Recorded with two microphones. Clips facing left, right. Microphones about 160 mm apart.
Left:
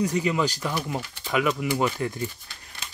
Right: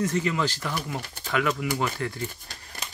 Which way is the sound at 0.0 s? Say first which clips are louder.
Left 2 dB; 15° left (ahead or behind).